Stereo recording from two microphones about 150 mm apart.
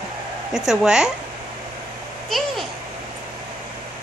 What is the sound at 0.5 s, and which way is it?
Speech, 5° right (ahead or behind).